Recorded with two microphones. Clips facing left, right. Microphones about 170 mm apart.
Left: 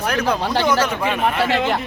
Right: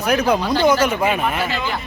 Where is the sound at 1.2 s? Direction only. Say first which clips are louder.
Left 3 dB; 75° left (ahead or behind).